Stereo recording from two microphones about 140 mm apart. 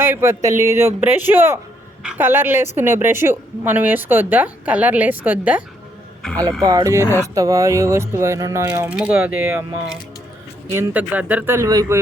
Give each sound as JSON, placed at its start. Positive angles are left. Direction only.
{"t": 0.0, "sound": "a woman's voice", "side_deg": -20}
{"t": 6.6, "sound": "speech", "side_deg": -25}
{"t": 8.9, "sound": "a woman's voice", "side_deg": -10}
{"t": 10.8, "sound": "a woman's voice", "side_deg": -10}